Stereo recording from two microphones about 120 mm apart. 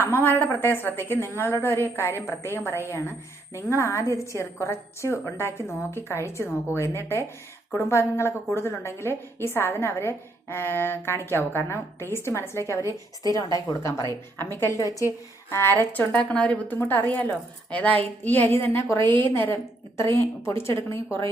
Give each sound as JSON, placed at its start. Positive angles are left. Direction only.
{"t": 0.0, "sound": "a woman's voice", "side_deg": 20}